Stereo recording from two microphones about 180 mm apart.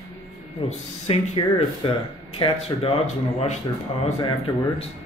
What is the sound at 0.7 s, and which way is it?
Speech, 35° left (ahead or behind).